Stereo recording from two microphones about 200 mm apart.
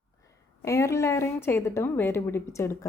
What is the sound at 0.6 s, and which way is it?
A woman's voice, 15° left (ahead or behind).